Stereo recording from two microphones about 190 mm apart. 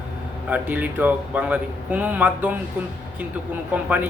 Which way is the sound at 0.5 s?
10° right (ahead or behind).